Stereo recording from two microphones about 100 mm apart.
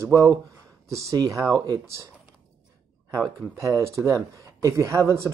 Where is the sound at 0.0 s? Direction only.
30° right (ahead or behind).